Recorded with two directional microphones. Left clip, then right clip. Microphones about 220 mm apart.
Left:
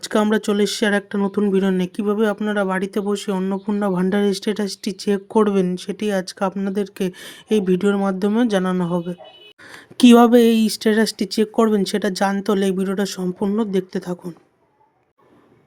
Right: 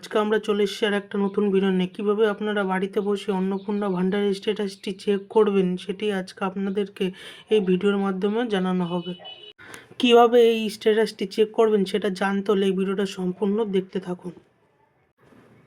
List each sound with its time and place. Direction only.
0.0 s speech: 50° left (ahead or behind)